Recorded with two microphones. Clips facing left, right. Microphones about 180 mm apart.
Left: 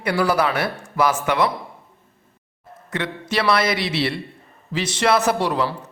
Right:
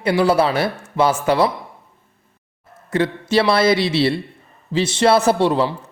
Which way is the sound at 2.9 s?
30° right (ahead or behind).